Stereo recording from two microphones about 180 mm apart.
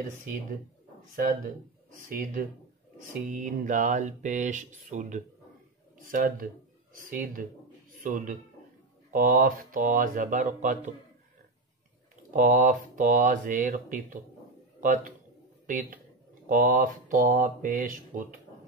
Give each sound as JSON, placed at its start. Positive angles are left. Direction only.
{"t": 2.0, "sound": "speech", "side_deg": -50}
{"t": 12.3, "sound": "a man's voice", "side_deg": -45}